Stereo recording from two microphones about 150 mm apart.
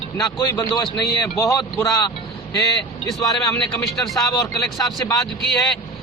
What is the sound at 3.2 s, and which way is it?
Speech, 25° left (ahead or behind).